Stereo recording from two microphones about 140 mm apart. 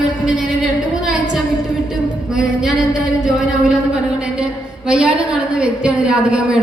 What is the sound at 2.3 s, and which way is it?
Music, 5° right (ahead or behind).